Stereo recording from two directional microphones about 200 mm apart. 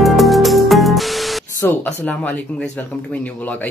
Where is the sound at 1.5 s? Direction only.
10° left (ahead or behind).